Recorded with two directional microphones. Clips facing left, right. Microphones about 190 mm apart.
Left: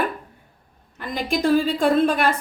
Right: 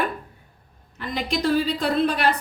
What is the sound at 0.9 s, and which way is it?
A woman's voice, 50° left (ahead or behind).